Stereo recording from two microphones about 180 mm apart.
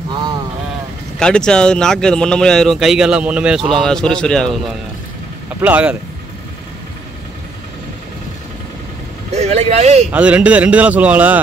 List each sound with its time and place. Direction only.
1.2 s speech: 5° left (ahead or behind)
5.6 s speech: 10° right (ahead or behind)
9.3 s speech: 40° right (ahead or behind)
10.1 s speech: 5° right (ahead or behind)